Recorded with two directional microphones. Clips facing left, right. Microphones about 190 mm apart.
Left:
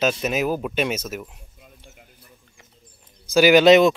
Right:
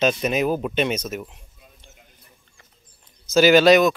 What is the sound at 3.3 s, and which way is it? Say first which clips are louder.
Speech: left 1 dB; 15° left (ahead or behind).